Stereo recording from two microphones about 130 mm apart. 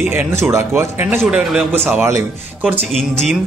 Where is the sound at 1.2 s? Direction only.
5° right (ahead or behind).